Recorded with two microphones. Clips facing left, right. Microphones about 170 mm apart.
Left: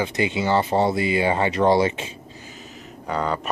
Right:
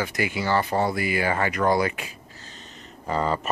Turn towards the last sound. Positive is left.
turn(degrees=0)  # may be behind; listen again after turning